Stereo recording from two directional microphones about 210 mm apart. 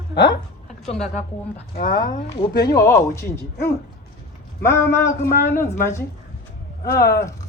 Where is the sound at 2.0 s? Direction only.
20° left (ahead or behind).